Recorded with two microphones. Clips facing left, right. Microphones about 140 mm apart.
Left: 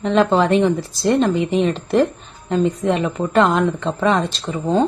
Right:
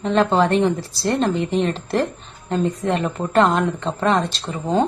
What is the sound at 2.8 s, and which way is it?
Speech, 5° left (ahead or behind).